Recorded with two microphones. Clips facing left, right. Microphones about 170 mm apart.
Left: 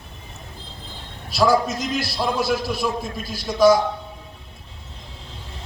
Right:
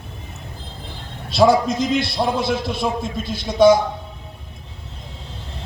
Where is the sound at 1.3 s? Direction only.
25° right (ahead or behind).